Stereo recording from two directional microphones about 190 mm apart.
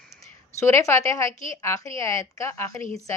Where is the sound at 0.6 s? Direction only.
15° left (ahead or behind).